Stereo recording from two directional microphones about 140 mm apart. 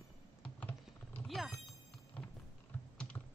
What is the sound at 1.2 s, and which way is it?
Speech, centre (ahead or behind).